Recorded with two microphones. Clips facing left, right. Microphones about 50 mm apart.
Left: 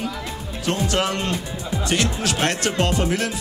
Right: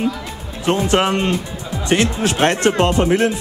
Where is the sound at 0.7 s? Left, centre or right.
Right.